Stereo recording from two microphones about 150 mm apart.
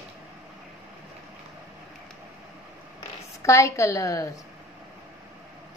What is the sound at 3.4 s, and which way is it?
Speech, 20° left (ahead or behind).